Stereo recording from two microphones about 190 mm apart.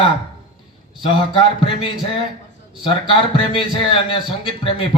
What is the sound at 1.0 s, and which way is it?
Speech, 25° left (ahead or behind).